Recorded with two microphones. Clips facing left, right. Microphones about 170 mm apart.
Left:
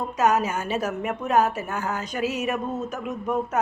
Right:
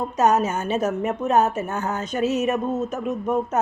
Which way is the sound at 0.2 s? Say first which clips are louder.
Right 2 dB; 25° right (ahead or behind).